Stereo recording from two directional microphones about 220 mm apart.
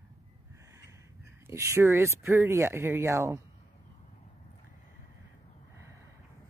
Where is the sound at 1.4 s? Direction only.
15° right (ahead or behind).